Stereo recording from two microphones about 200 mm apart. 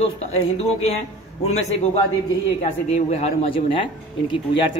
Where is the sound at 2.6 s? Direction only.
30° left (ahead or behind).